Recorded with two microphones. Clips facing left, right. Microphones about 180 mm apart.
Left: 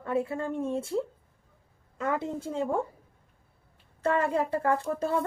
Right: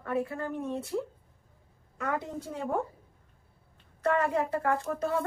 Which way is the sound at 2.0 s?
25° left (ahead or behind).